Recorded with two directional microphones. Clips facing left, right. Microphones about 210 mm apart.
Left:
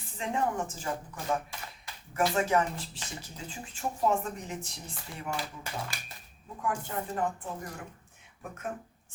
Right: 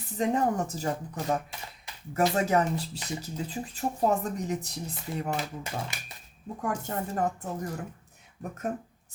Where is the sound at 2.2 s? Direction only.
35° right (ahead or behind).